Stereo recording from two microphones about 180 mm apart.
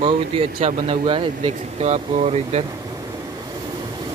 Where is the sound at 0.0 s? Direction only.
35° right (ahead or behind).